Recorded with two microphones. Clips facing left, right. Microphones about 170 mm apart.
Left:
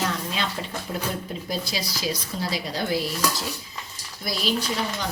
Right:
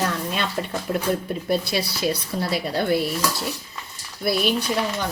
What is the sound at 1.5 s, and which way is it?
Speech, 60° right (ahead or behind).